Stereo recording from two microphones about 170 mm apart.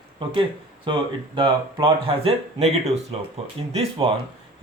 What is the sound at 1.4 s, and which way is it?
Speech, 30° right (ahead or behind).